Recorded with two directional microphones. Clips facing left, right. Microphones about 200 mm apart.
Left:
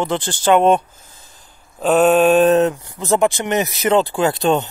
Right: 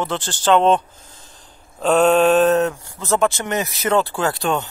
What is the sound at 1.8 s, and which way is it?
Speech, 5° left (ahead or behind).